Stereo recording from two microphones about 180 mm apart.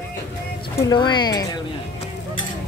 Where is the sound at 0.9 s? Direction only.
25° left (ahead or behind).